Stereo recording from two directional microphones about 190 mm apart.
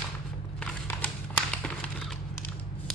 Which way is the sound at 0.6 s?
5° left (ahead or behind).